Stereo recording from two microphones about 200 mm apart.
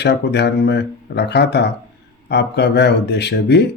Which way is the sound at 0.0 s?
55° left (ahead or behind).